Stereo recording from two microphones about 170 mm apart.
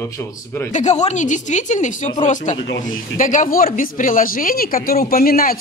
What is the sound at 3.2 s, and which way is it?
A man's voice, 50° left (ahead or behind).